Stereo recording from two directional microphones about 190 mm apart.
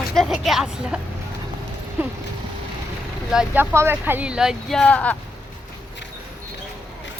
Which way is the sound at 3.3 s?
5° right (ahead or behind).